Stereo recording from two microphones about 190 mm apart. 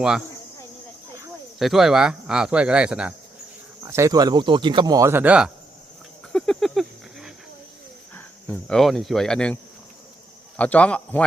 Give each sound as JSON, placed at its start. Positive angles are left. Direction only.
{"t": 1.5, "sound": "speech", "side_deg": 0}
{"t": 3.8, "sound": "speech", "side_deg": -15}
{"t": 6.3, "sound": "a sound", "side_deg": 5}
{"t": 8.1, "sound": "speech", "side_deg": 5}
{"t": 10.6, "sound": "speech", "side_deg": 5}